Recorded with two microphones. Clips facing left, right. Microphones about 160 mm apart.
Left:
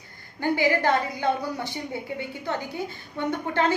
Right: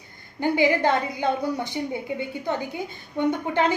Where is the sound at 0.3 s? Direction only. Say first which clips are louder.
Right 2 dB; 20° right (ahead or behind).